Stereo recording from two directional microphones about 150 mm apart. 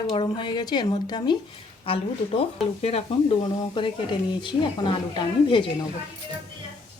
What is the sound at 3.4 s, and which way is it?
A woman's voice, 30° left (ahead or behind).